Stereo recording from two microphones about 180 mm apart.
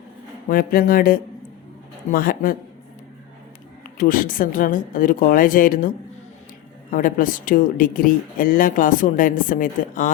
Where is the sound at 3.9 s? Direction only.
50° left (ahead or behind).